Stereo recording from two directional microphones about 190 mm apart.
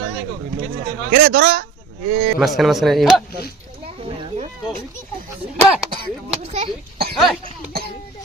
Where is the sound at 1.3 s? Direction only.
60° right (ahead or behind).